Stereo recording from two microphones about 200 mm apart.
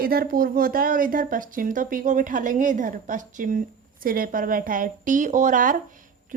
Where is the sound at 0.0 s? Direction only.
50° right (ahead or behind).